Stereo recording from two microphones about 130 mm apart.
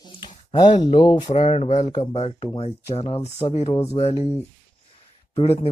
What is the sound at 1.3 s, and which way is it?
Speech, 50° left (ahead or behind).